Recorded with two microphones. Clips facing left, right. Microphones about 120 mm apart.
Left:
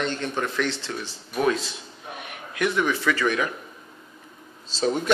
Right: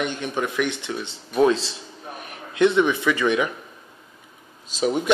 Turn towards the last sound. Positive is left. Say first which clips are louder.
# right 2 dB
turn(degrees=-10)  # may be behind; listen again after turning